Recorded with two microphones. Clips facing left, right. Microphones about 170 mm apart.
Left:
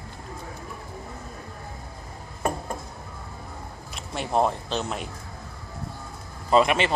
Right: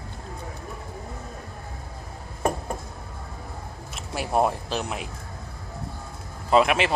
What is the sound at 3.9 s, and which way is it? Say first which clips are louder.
Speech: even; 5° right (ahead or behind).